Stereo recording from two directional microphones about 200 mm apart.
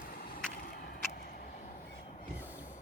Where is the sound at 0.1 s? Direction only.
45° left (ahead or behind).